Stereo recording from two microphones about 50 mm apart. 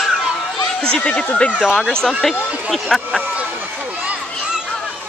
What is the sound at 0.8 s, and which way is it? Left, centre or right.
Speech, left.